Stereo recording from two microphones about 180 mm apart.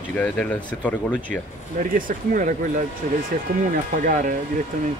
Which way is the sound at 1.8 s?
50° right (ahead or behind).